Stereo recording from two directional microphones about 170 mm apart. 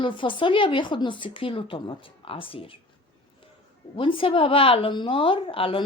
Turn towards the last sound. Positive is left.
turn(degrees=30)  # may be behind; listen again after turning